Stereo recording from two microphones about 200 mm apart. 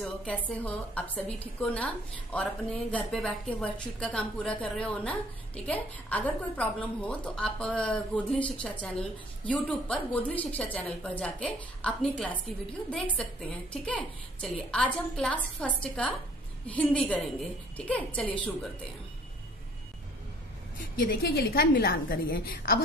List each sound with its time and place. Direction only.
0.0 s a woman's voice: 5° left (ahead or behind)
20.7 s a woman's voice: 45° left (ahead or behind)